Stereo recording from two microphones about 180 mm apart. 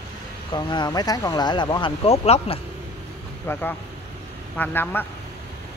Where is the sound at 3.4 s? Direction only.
10° left (ahead or behind).